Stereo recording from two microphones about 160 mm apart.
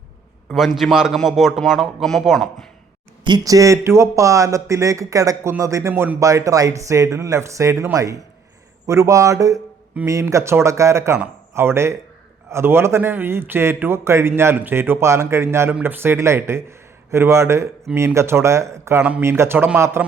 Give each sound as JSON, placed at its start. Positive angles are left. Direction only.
{"t": 0.4, "sound": "a man's voice", "side_deg": 0}
{"t": 3.2, "sound": "a man's voice", "side_deg": -25}